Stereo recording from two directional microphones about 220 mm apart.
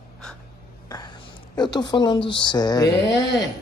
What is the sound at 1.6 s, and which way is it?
A woman's voice, 20° left (ahead or behind).